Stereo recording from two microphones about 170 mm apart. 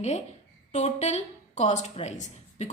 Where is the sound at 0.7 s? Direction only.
40° left (ahead or behind).